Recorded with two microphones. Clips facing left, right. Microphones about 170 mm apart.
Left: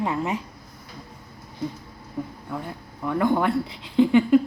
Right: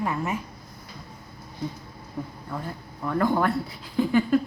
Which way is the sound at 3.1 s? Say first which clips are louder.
Left 2 dB; 10° left (ahead or behind).